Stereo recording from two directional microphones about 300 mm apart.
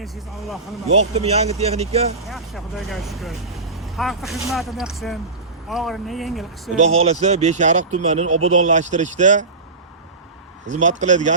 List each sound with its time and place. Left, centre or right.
0.0 s speech: centre
0.9 s speech: right
2.3 s speech: centre
6.7 s speech: right
10.7 s speech: right